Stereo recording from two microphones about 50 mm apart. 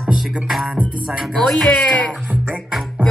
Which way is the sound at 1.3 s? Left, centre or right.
Centre.